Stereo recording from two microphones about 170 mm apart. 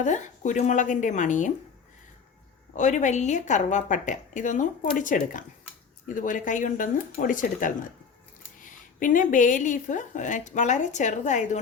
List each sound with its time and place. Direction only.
0.0 s a woman's voice: 45° left (ahead or behind)
2.7 s a woman's voice: 45° left (ahead or behind)